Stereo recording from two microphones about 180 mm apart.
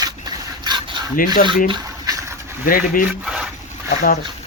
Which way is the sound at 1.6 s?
25° right (ahead or behind).